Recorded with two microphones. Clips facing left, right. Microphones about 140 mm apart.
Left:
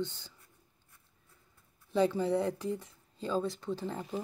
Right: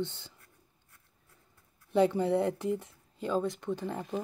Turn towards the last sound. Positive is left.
turn(degrees=-20)  # may be behind; listen again after turning